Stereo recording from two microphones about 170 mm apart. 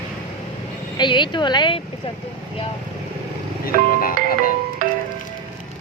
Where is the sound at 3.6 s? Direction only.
55° left (ahead or behind).